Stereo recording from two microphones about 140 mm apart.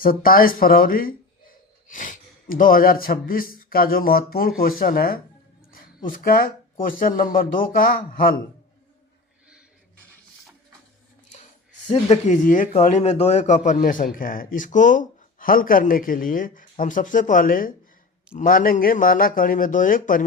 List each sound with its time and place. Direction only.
0.0 s speech: 90° left
11.9 s a man's voice: 45° left (ahead or behind); by 20.2 s 75° left (ahead or behind)